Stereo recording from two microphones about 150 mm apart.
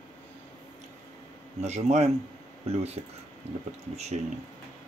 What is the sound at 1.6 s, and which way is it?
Speech, 50° right (ahead or behind).